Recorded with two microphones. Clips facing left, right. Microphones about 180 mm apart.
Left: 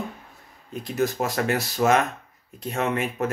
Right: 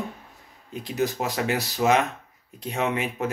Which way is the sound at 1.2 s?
10° right (ahead or behind).